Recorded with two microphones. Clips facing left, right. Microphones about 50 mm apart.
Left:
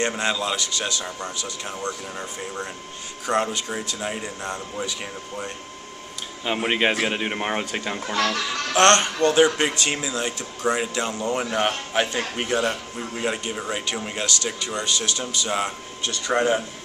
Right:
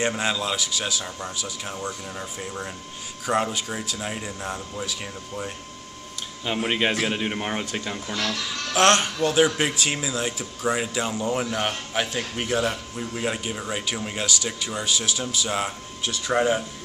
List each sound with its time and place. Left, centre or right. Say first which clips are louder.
0.1 s speech: left 1 dB; centre
3.3 s a man's voice: left 1 dB; centre
8.1 s speech: left 5 dB; left
8.7 s speech: left 2 dB; centre
11.5 s a man's voice: left 3 dB; centre